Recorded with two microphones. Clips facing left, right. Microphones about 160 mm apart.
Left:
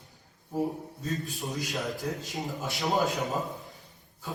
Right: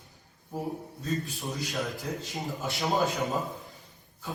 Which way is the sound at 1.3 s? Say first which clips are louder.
Even; centre (ahead or behind).